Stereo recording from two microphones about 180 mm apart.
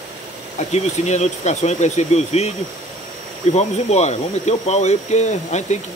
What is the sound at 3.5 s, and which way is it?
Speech, 40° left (ahead or behind).